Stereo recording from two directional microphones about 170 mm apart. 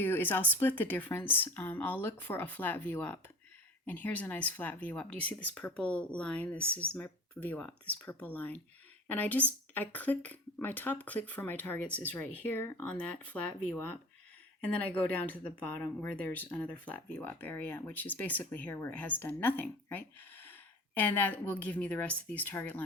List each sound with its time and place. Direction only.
0.0 s speech: 10° left (ahead or behind)
14.8 s speech: 10° left (ahead or behind)